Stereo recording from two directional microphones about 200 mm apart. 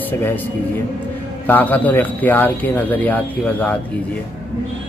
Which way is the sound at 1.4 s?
10° left (ahead or behind).